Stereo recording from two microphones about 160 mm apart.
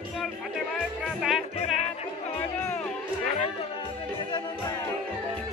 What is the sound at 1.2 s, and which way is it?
Music, centre (ahead or behind).